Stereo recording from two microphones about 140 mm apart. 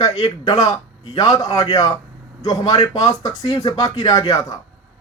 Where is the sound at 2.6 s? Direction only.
40° left (ahead or behind).